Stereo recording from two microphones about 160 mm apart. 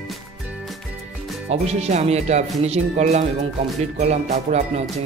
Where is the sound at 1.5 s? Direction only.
40° right (ahead or behind).